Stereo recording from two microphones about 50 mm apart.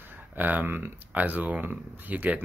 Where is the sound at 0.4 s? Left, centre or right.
Right.